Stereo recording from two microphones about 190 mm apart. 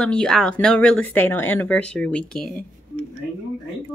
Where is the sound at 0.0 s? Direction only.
5° left (ahead or behind).